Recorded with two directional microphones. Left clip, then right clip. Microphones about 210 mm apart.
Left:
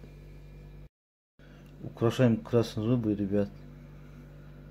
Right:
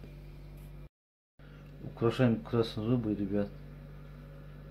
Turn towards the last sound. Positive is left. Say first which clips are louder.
# left 4 dB
turn(degrees=40)  # may be behind; listen again after turning